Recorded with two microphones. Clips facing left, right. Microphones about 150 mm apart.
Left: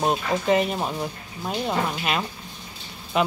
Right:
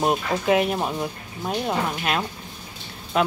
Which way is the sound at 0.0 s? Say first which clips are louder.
Right 1 dB; 5° right (ahead or behind).